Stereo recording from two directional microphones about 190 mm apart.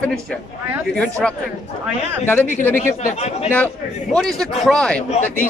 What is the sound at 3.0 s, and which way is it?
Speech, 35° left (ahead or behind).